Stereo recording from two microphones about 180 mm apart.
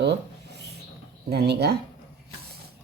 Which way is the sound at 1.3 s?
65° right (ahead or behind).